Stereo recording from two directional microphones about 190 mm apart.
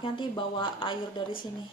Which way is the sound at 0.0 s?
25° left (ahead or behind).